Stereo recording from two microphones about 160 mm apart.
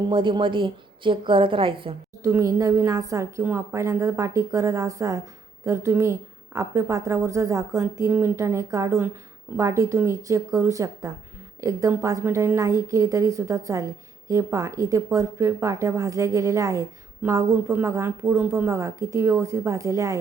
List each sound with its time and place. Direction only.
0.1 s a woman's voice: 30° right (ahead or behind)
2.2 s a woman's voice: 20° right (ahead or behind)